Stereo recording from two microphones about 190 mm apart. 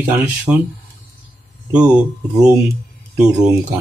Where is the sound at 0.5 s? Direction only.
10° right (ahead or behind).